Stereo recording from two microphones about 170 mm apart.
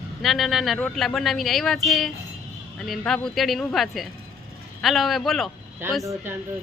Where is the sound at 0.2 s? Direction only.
Centre (ahead or behind).